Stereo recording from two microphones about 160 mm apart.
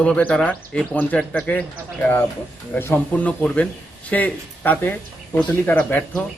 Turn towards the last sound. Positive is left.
turn(degrees=5)  # may be behind; listen again after turning